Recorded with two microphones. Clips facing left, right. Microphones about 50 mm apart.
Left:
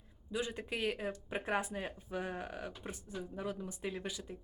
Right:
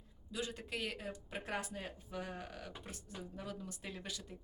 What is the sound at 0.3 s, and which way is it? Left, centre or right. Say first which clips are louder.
Speech: left 4 dB; left.